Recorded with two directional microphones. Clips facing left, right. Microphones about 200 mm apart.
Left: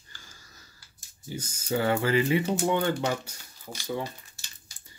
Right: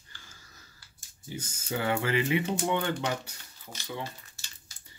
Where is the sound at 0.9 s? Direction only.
40° left (ahead or behind).